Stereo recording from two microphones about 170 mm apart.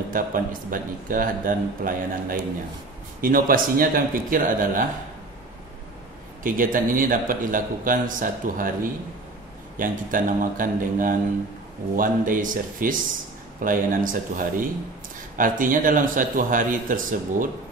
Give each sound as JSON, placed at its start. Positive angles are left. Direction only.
{"t": 0.1, "sound": "a man's voice", "side_deg": -55}
{"t": 6.4, "sound": "a man's voice", "side_deg": -55}